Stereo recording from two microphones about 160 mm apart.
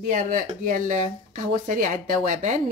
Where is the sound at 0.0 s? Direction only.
55° right (ahead or behind).